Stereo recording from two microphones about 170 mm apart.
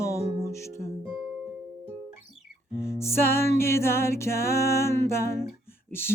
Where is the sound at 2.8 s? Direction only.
15° left (ahead or behind).